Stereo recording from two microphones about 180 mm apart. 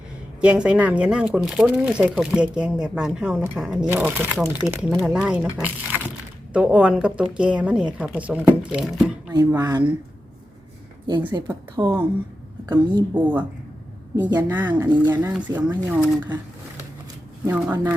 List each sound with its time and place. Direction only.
0.4 s a woman's voice: 5° right (ahead or behind)
9.3 s a woman's voice: 20° right (ahead or behind)
11.0 s a woman's voice: 25° right (ahead or behind)
13.1 s a woman's voice: 10° right (ahead or behind)
14.4 s a woman's voice: 10° right (ahead or behind)
14.7 s a woman's voice: 20° right (ahead or behind)
15.1 s a woman's voice: 10° right (ahead or behind)
17.4 s a woman's voice: 10° right (ahead or behind)